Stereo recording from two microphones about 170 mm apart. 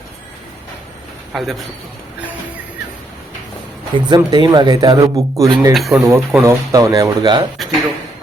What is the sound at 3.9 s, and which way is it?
Speech, 25° right (ahead or behind).